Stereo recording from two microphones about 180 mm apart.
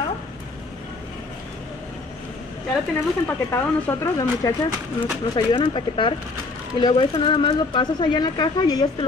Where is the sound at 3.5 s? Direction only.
15° left (ahead or behind).